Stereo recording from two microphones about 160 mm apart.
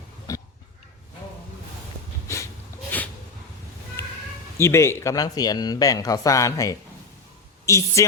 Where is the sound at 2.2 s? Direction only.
20° left (ahead or behind).